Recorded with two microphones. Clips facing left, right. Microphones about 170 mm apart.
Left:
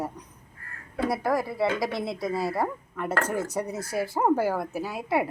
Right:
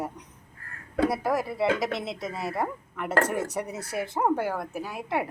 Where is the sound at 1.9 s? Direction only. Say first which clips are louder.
Left 2 dB; 25° right (ahead or behind).